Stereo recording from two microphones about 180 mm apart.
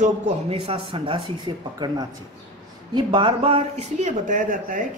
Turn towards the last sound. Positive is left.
turn(degrees=-50)  # may be behind; listen again after turning